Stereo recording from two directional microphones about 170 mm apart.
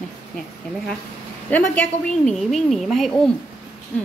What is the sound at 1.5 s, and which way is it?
A woman's voice, 10° left (ahead or behind).